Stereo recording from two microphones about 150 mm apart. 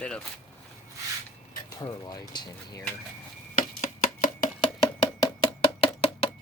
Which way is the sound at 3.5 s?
60° left (ahead or behind).